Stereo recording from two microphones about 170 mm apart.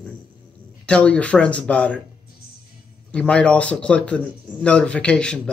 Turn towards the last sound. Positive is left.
turn(degrees=5)  # may be behind; listen again after turning